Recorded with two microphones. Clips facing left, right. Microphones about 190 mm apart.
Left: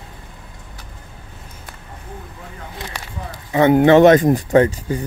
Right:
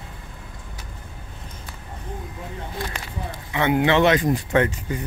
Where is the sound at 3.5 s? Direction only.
40° left (ahead or behind).